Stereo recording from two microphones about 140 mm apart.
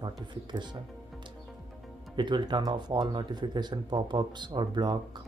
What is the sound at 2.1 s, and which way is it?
Speech, 35° right (ahead or behind).